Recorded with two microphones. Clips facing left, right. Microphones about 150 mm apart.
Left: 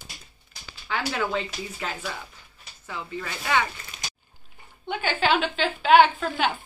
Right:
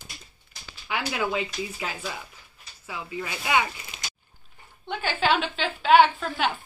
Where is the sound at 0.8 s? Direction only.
10° right (ahead or behind).